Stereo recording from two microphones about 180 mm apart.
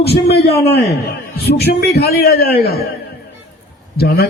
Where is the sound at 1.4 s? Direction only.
60° left (ahead or behind).